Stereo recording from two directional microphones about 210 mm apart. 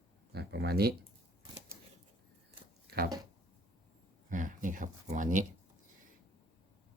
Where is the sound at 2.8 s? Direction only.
50° right (ahead or behind).